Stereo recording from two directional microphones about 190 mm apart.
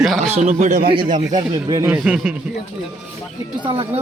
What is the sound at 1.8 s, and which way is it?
Speech, 5° right (ahead or behind).